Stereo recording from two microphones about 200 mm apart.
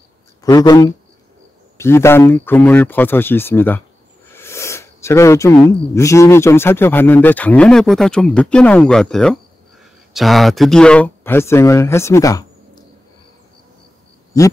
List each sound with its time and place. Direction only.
0.4 s speech: 20° left (ahead or behind)